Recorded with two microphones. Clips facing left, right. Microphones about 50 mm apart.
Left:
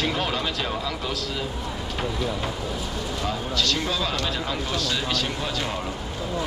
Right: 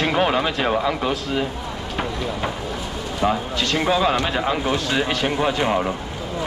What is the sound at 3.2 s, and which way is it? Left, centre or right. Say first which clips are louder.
Speech: right 7 dB; right.